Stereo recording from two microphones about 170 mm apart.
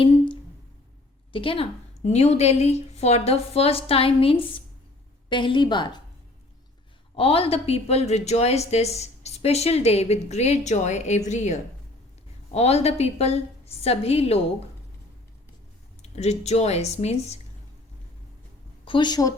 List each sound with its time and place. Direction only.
1.3 s a woman's voice: 30° left (ahead or behind)
7.2 s a woman's voice: 35° left (ahead or behind)
16.0 s a woman's voice: 40° left (ahead or behind)
18.9 s a woman's voice: 25° left (ahead or behind)